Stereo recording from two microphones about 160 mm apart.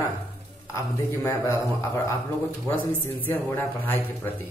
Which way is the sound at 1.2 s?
20° left (ahead or behind).